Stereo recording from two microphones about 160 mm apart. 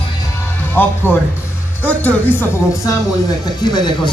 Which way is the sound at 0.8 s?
10° left (ahead or behind).